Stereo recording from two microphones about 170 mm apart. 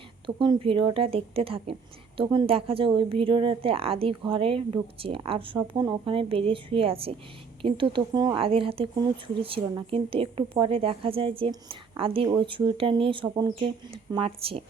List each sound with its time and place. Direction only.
0.3 s speech: 30° right (ahead or behind)